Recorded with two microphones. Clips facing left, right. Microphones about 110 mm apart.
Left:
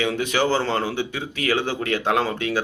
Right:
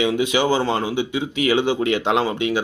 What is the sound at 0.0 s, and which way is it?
Speech, 15° right (ahead or behind).